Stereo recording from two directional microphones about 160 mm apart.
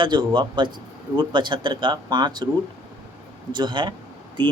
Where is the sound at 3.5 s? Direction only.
30° right (ahead or behind).